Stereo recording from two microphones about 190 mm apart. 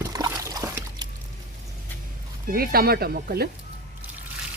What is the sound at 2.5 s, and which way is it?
Speech, 50° right (ahead or behind).